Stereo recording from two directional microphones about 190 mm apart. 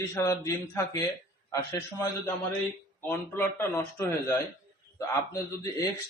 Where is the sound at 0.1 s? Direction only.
15° left (ahead or behind).